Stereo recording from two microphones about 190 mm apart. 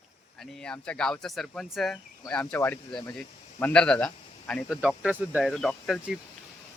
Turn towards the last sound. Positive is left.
turn(degrees=0)  # may be behind; listen again after turning